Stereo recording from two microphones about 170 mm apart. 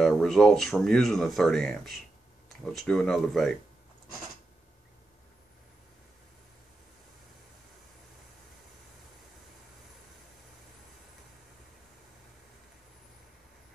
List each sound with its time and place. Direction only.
0.0 s speech: centre (ahead or behind)